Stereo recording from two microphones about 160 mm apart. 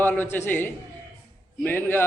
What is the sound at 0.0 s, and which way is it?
A man's voice, 10° left (ahead or behind).